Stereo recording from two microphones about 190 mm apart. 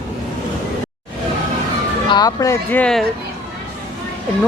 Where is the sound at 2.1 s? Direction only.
20° left (ahead or behind).